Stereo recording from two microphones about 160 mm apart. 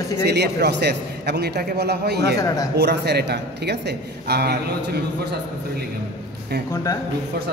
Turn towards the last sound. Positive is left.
turn(degrees=20)  # may be behind; listen again after turning